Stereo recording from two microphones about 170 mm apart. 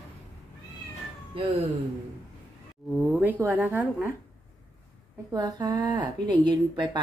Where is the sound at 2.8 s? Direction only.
Centre (ahead or behind).